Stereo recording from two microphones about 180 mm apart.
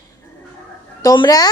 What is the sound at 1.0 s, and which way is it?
Speech, 20° left (ahead or behind).